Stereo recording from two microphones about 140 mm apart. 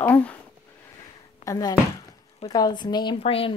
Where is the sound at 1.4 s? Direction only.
25° left (ahead or behind).